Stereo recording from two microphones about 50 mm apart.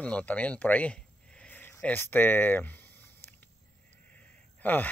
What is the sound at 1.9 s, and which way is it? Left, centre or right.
Speech, left.